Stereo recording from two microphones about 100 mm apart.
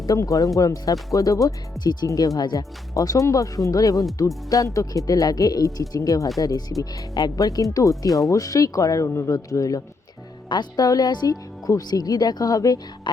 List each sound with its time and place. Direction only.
0.0 s speech: 35° left (ahead or behind)
1.8 s speech: 45° left (ahead or behind)
2.0 s speech: 35° left (ahead or behind)